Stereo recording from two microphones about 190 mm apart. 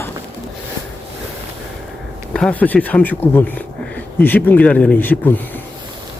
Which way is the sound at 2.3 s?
5° left (ahead or behind).